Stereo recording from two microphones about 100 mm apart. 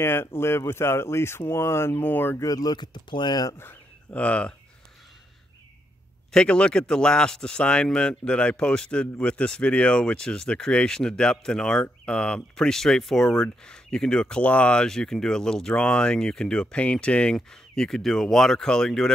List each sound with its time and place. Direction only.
0.0 s speech: 25° left (ahead or behind)
2.4 s speech: 40° left (ahead or behind)
3.5 s speech: 15° left (ahead or behind)
6.3 s speech: 10° left (ahead or behind)